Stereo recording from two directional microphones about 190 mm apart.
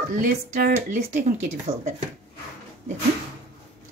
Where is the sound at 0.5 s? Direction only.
50° right (ahead or behind).